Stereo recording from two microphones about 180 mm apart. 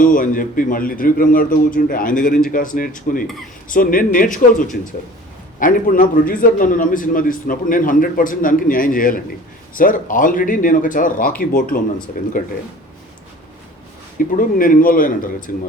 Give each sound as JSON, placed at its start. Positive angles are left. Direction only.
{"t": 0.0, "sound": "a man's voice", "side_deg": 50}
{"t": 14.3, "sound": "a man's voice", "side_deg": 50}